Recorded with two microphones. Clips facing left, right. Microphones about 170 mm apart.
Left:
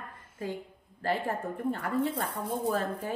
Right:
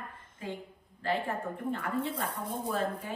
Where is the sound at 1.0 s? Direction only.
40° left (ahead or behind).